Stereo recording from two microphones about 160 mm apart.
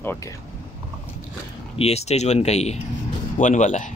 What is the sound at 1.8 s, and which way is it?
Speech, 40° left (ahead or behind).